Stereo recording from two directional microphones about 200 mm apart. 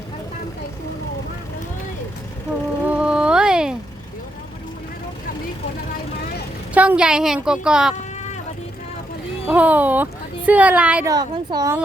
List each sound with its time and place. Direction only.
2.8 s music: 5° right (ahead or behind)
6.7 s a woman's voice: 5° right (ahead or behind)
9.5 s speech: 10° right (ahead or behind)
11.1 s speech: 20° right (ahead or behind)